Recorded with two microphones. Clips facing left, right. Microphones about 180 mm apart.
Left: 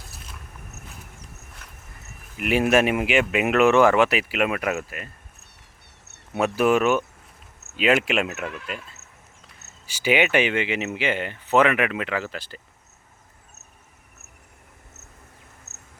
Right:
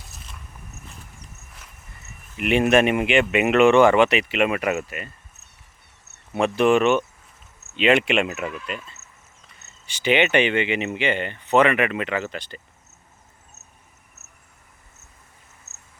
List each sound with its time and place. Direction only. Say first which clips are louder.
2.4 s speech: right 2 dB; 5° left (ahead or behind)
6.3 s speech: right 2 dB; 5° left (ahead or behind)
15.7 s a sound: left 3 dB; 20° left (ahead or behind)